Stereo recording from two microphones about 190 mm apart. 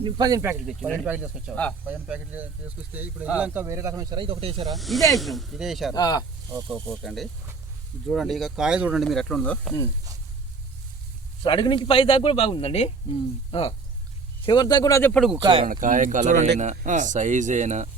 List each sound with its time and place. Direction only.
0.0 s speech: 20° right (ahead or behind)
0.8 s speech: 10° left (ahead or behind)
1.0 s speech: 10° right (ahead or behind); by 4.7 s 30° right (ahead or behind)
4.7 s speech: centre (ahead or behind)
5.9 s a man's voice: 20° left (ahead or behind)
6.6 s speech: 5° left (ahead or behind)
11.4 s a man's voice: 25° left (ahead or behind); by 15.4 s 5° left (ahead or behind)
15.6 s speech: 45° right (ahead or behind)